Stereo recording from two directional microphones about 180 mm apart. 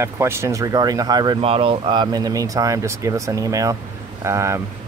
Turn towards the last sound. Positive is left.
turn(degrees=-15)  # may be behind; listen again after turning